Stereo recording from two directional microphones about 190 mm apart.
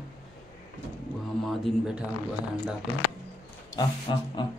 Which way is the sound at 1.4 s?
Centre (ahead or behind).